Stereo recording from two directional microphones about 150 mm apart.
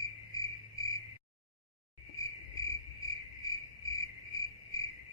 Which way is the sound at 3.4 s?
25° left (ahead or behind).